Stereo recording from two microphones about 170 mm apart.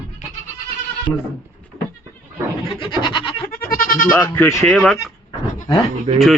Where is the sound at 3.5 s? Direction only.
60° left (ahead or behind).